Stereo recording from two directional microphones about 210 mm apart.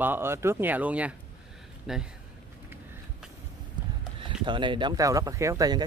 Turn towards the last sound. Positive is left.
turn(degrees=-15)  # may be behind; listen again after turning